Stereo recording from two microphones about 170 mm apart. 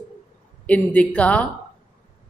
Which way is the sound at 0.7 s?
10° left (ahead or behind).